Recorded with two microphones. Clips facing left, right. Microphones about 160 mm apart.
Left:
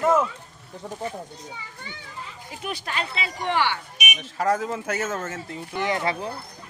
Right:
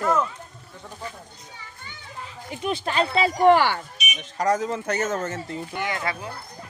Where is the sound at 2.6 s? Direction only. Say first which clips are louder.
Right 6 dB; 30° right (ahead or behind).